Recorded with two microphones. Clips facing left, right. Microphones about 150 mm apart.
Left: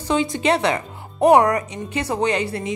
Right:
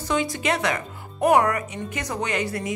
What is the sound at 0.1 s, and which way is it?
A woman's voice, 25° left (ahead or behind).